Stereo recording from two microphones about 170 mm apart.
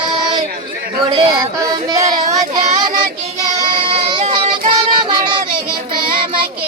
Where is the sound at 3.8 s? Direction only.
30° right (ahead or behind).